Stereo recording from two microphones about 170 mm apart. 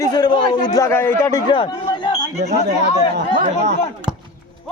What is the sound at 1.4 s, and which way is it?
Chatter, 30° left (ahead or behind).